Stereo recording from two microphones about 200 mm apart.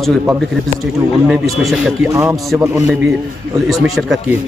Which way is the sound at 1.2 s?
Centre (ahead or behind).